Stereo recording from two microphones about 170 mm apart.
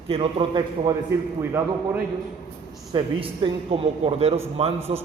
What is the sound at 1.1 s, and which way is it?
Speech, 15° right (ahead or behind).